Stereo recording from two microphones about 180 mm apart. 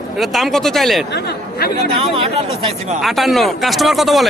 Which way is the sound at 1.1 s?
60° left (ahead or behind).